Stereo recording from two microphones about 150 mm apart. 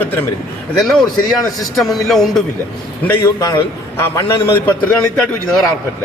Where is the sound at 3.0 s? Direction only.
20° left (ahead or behind).